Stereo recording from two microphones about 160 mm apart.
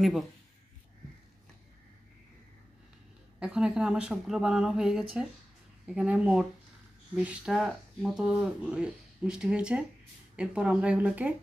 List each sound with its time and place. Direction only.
0.0 s speech: centre (ahead or behind)
3.3 s speech: 5° right (ahead or behind)